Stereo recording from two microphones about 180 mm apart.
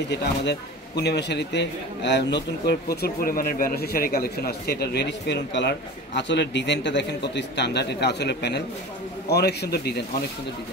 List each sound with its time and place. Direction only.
0.1 s a man's voice: 70° left (ahead or behind)